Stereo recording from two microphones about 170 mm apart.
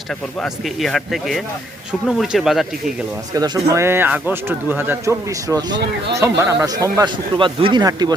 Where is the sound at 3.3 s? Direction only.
20° right (ahead or behind).